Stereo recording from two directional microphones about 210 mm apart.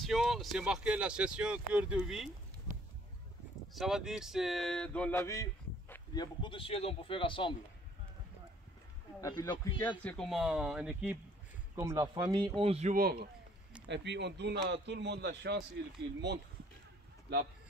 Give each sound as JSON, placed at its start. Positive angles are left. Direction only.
{"t": 0.0, "sound": "speech", "side_deg": 0}
{"t": 3.7, "sound": "speech", "side_deg": 0}
{"t": 9.2, "sound": "speech", "side_deg": 15}
{"t": 10.0, "sound": "speech", "side_deg": 5}
{"t": 13.0, "sound": "a man's voice", "side_deg": -50}